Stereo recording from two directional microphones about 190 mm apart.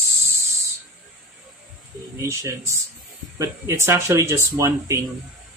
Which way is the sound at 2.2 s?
15° right (ahead or behind).